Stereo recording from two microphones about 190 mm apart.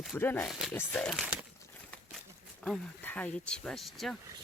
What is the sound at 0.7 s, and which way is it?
Speech, 10° left (ahead or behind).